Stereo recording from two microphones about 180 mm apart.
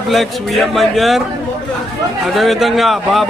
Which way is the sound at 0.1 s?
Centre (ahead or behind).